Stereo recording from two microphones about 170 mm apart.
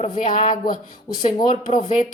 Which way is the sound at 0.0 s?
45° left (ahead or behind).